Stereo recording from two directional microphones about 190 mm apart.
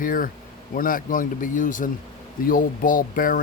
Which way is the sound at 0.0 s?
45° left (ahead or behind).